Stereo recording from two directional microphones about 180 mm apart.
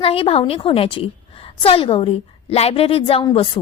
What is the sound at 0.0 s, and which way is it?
A woman's voice, 30° left (ahead or behind).